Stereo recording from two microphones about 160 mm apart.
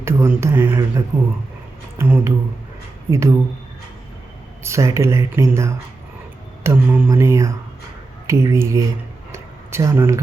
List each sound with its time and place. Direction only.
0.0 s speech: 15° right (ahead or behind)
4.6 s speech: 20° right (ahead or behind)
9.3 s a sound: 20° right (ahead or behind)